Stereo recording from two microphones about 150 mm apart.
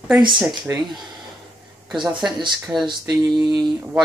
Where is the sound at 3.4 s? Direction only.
25° right (ahead or behind).